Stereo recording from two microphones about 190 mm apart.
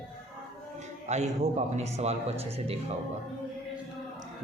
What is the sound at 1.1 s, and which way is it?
Speech, 35° right (ahead or behind).